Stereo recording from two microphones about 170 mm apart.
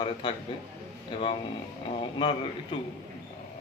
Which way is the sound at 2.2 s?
30° left (ahead or behind).